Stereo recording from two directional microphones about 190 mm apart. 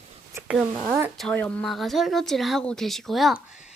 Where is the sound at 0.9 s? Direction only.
15° right (ahead or behind).